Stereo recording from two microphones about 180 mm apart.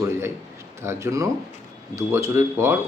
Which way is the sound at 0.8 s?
15° right (ahead or behind).